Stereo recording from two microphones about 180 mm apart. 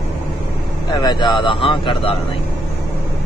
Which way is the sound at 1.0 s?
25° left (ahead or behind).